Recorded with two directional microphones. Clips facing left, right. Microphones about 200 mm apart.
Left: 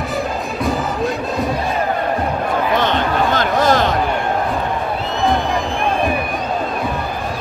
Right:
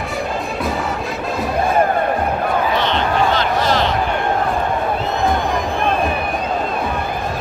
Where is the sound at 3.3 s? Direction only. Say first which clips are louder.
Left 2 dB; 50° left (ahead or behind).